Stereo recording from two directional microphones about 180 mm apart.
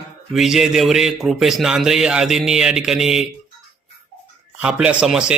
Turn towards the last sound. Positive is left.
turn(degrees=-5)  # may be behind; listen again after turning